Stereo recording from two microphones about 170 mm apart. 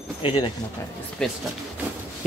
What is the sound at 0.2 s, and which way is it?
Speech, 30° left (ahead or behind).